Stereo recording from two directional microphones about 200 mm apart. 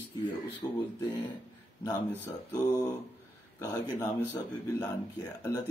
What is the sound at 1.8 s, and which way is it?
A man's voice, 15° left (ahead or behind).